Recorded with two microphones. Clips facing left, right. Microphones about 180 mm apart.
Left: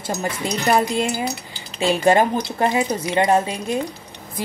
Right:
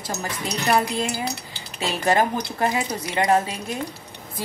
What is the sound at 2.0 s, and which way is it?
A woman's voice, 25° left (ahead or behind).